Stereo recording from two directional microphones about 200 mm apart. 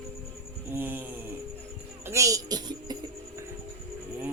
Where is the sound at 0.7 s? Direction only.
10° right (ahead or behind).